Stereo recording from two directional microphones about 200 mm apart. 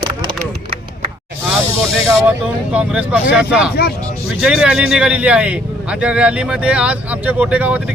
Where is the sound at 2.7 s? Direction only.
5° right (ahead or behind).